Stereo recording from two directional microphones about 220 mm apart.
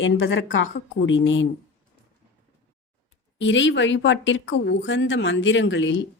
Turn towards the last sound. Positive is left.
turn(degrees=55)  # may be behind; listen again after turning